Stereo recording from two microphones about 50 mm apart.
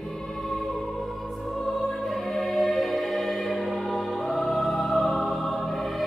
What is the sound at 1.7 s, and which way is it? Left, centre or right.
Music, centre.